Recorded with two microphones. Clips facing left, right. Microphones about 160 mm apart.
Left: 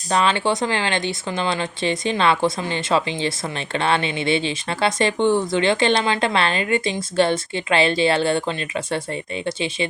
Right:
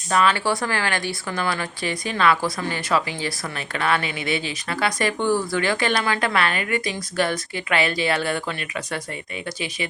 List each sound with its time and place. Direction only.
0.1 s speech: 25° left (ahead or behind)